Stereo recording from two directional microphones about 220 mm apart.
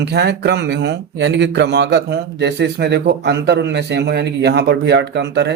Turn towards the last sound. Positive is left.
turn(degrees=-50)  # may be behind; listen again after turning